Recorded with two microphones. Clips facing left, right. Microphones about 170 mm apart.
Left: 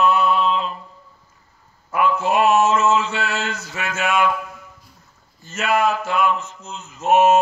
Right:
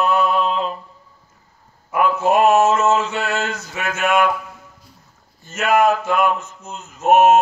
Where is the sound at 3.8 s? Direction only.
55° right (ahead or behind).